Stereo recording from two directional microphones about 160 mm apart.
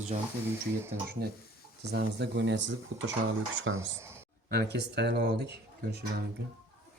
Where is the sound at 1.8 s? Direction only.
90° right.